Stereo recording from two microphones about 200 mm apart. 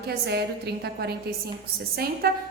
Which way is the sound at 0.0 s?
55° right (ahead or behind).